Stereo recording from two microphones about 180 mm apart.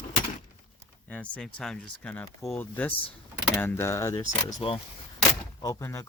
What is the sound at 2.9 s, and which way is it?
Speech, 30° left (ahead or behind).